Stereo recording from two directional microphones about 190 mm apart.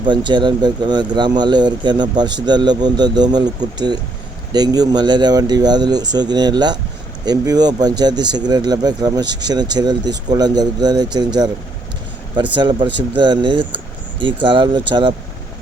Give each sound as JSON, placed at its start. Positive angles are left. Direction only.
{"t": 0.0, "sound": "speech", "side_deg": -25}